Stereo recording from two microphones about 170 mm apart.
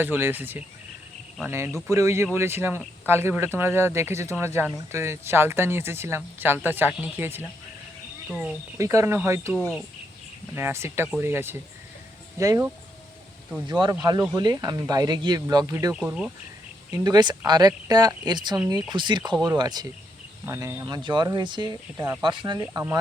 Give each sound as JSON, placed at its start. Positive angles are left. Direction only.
{"t": 0.0, "sound": "speech", "side_deg": -10}
{"t": 8.8, "sound": "speech", "side_deg": -20}
{"t": 9.6, "sound": "speech", "side_deg": 5}
{"t": 10.5, "sound": "speech", "side_deg": -15}
{"t": 13.7, "sound": "speech", "side_deg": -25}
{"t": 16.9, "sound": "speech", "side_deg": -25}
{"t": 20.8, "sound": "speech", "side_deg": -25}